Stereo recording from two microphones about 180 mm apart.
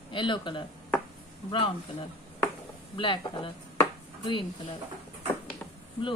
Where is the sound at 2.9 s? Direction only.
25° left (ahead or behind).